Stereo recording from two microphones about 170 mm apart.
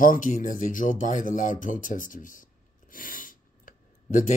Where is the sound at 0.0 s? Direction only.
50° left (ahead or behind).